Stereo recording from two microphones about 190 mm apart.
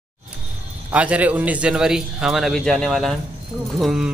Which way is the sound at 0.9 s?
5° right (ahead or behind).